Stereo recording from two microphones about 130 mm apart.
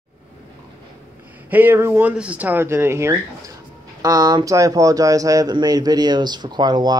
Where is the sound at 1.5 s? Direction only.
15° right (ahead or behind).